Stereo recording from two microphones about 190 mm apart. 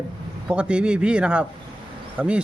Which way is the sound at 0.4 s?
5° right (ahead or behind).